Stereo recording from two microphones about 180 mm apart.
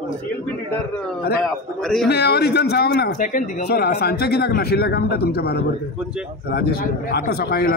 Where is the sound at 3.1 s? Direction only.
50° left (ahead or behind).